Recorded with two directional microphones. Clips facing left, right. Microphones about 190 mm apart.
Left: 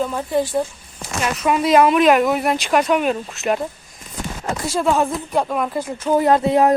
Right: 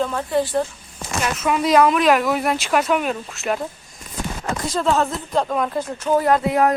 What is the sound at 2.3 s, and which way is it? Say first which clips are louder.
Speech: left 1 dB; centre (ahead or behind).